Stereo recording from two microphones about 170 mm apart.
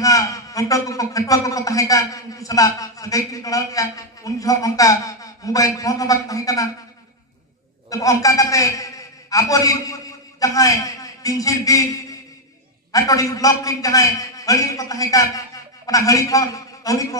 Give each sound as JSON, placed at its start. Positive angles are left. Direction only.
{"t": 0.0, "sound": "a man's voice", "side_deg": 20}
{"t": 7.9, "sound": "a man's voice", "side_deg": 20}
{"t": 12.9, "sound": "a man's voice", "side_deg": 20}